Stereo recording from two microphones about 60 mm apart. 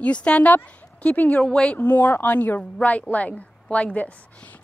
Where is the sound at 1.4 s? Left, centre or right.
Centre.